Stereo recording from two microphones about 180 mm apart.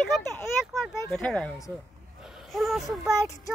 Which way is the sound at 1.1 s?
5° left (ahead or behind).